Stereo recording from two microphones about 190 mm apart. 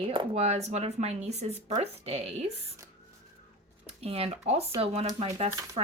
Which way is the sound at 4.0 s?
30° right (ahead or behind).